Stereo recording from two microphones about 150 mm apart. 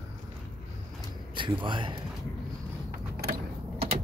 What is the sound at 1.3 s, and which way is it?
Speech, 35° right (ahead or behind).